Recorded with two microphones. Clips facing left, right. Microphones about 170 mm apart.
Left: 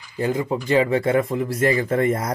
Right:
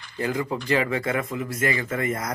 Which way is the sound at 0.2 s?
25° left (ahead or behind).